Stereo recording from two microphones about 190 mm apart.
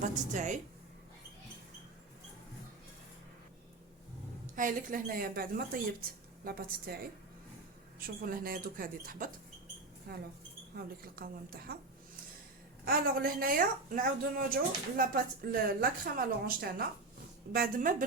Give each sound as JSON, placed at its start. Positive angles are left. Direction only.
{"t": 0.3, "sound": "speech", "side_deg": -40}
{"t": 4.5, "sound": "a woman's voice", "side_deg": -45}
{"t": 8.0, "sound": "a woman's voice", "side_deg": -50}
{"t": 12.8, "sound": "a woman's voice", "side_deg": -50}